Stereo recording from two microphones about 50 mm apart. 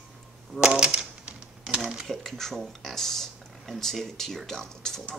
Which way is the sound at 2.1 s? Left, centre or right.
Centre.